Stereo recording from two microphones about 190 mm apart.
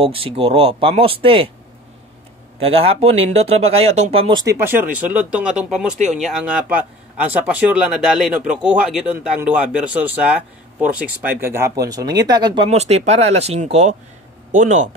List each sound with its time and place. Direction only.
0.0 s speech: 30° right (ahead or behind)
2.6 s speech: 30° right (ahead or behind)
4.6 s speech: 10° right (ahead or behind)
5.9 s speech: 40° right (ahead or behind)
6.2 s speech: 5° right (ahead or behind); by 12.6 s 20° right (ahead or behind)
12.6 s speech: 35° right (ahead or behind)